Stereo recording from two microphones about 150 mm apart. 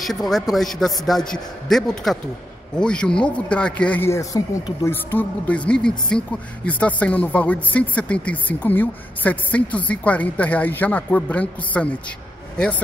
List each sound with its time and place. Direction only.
0.3 s a man's voice: centre (ahead or behind)